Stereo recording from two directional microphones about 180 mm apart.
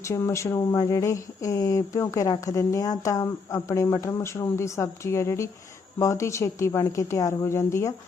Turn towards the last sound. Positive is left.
turn(degrees=15)  # may be behind; listen again after turning